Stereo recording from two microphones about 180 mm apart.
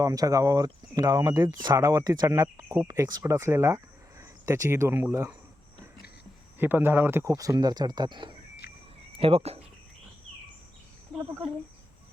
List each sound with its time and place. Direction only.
0.0 s speech: 20° right (ahead or behind)
6.6 s speech: 10° right (ahead or behind); by 9.6 s 35° right (ahead or behind)